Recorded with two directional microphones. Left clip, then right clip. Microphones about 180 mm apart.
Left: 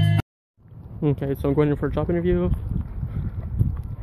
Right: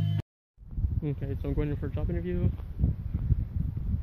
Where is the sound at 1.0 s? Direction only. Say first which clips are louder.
Left 13 dB; 20° left (ahead or behind).